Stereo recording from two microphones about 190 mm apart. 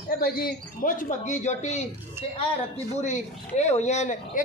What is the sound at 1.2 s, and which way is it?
Speech, 40° left (ahead or behind).